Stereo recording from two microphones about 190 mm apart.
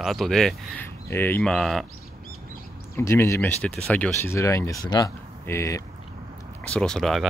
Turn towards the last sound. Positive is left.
turn(degrees=0)  # may be behind; listen again after turning